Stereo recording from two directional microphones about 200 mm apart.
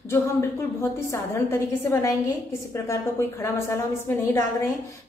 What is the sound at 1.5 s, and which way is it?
A woman's voice, 10° left (ahead or behind).